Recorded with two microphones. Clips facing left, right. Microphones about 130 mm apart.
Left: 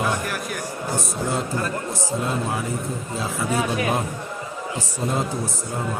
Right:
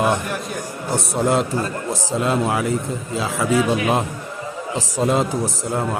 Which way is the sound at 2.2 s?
90° right.